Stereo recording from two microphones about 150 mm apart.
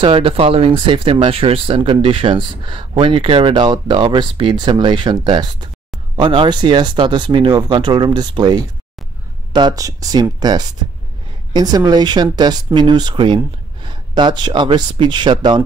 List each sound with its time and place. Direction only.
0.0 s speech: 35° right (ahead or behind)